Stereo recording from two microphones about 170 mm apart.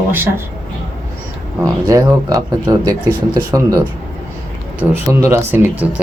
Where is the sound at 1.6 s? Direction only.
20° right (ahead or behind).